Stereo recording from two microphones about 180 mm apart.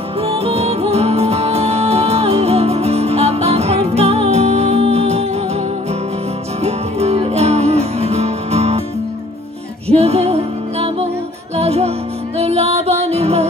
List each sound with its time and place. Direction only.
0.2 s music: 35° right (ahead or behind)
6.6 s music: 35° right (ahead or behind)
9.8 s music: 35° right (ahead or behind)